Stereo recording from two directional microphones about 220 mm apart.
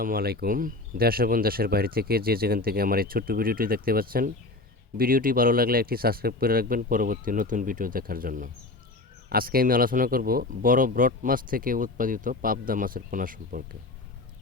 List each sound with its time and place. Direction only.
0.0 s speech: 45° right (ahead or behind)